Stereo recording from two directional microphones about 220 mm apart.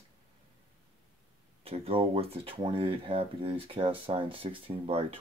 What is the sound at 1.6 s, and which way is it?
Speech, 25° right (ahead or behind).